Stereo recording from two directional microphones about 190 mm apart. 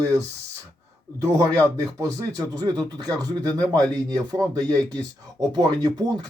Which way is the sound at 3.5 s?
5° left (ahead or behind).